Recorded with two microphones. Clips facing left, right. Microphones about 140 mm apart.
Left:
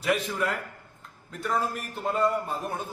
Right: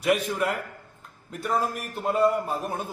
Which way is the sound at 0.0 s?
10° right (ahead or behind).